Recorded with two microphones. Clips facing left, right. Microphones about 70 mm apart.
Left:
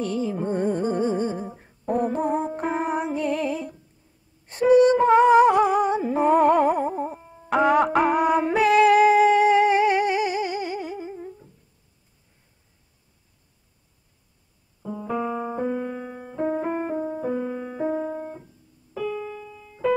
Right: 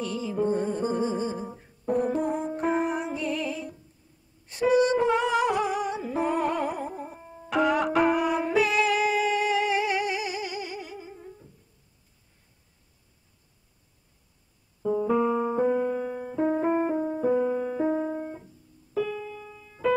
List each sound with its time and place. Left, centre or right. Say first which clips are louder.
0.0 s music: left 2 dB; left
2.7 s music: left 2 dB; left
7.2 s music: right 2 dB; centre
7.4 s music: left 5 dB; left
14.9 s music: right 4 dB; centre
18.9 s keyboard: even; centre